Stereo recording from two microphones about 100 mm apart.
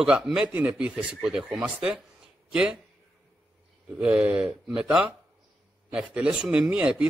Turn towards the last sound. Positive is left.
turn(degrees=-10)  # may be behind; listen again after turning